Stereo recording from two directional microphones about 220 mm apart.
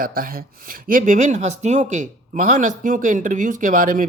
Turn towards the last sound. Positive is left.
turn(degrees=-35)  # may be behind; listen again after turning